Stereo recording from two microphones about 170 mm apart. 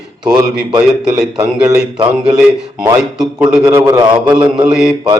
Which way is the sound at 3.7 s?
20° right (ahead or behind).